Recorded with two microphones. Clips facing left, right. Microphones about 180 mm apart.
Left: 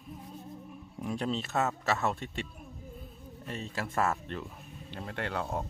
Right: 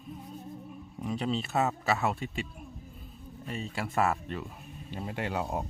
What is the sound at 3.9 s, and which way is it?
Speech, 15° right (ahead or behind).